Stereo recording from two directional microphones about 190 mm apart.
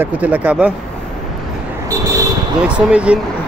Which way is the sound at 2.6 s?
5° right (ahead or behind).